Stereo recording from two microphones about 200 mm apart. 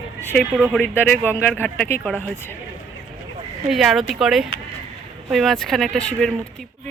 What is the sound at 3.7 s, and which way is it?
Speech, centre (ahead or behind).